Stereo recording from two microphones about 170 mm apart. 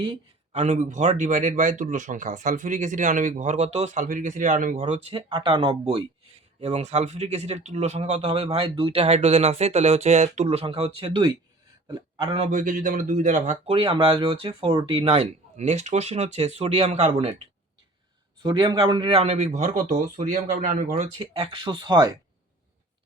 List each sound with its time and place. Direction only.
0.0 s a man's voice: 35° right (ahead or behind)
12.5 s speech: 50° right (ahead or behind)
13.7 s speech: 30° right (ahead or behind)
18.4 s speech: 25° right (ahead or behind); by 20.9 s 55° right (ahead or behind)
20.9 s speech: 35° right (ahead or behind)